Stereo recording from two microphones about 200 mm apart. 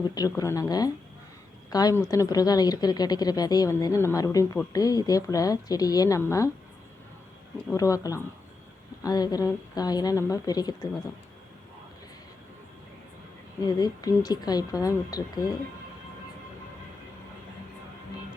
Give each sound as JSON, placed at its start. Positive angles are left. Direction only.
{"t": 0.1, "sound": "a woman's voice", "side_deg": 20}
{"t": 7.7, "sound": "a woman's voice", "side_deg": 15}
{"t": 13.7, "sound": "a woman's voice", "side_deg": 20}